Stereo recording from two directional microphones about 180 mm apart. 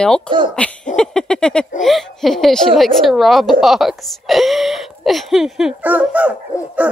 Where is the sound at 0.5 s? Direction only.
5° left (ahead or behind).